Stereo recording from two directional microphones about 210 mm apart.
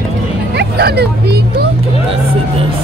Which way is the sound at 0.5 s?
50° right (ahead or behind).